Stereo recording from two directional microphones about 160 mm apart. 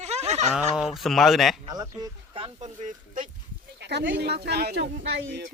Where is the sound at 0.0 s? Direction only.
45° right (ahead or behind).